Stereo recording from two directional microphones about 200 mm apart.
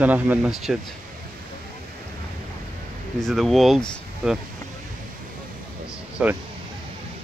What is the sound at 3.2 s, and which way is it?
Speech, centre (ahead or behind).